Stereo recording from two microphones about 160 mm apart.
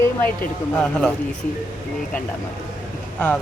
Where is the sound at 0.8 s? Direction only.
5° left (ahead or behind).